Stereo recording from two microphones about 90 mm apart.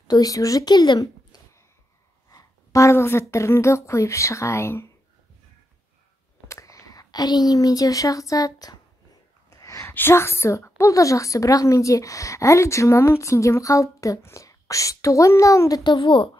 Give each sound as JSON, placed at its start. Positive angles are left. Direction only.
{"t": 0.1, "sound": "speech", "side_deg": 40}
{"t": 2.3, "sound": "a woman's voice", "side_deg": 35}
{"t": 6.4, "sound": "speech", "side_deg": 35}
{"t": 9.5, "sound": "a sound", "side_deg": 35}
{"t": 9.9, "sound": "a woman's voice", "side_deg": 25}